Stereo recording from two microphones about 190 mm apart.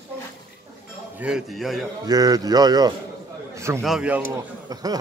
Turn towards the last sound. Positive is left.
turn(degrees=-20)  # may be behind; listen again after turning